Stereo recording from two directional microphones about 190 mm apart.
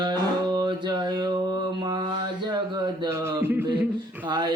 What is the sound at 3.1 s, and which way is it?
Speech, 15° right (ahead or behind).